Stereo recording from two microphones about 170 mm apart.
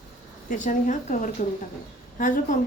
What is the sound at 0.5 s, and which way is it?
A woman's voice, 50° left (ahead or behind).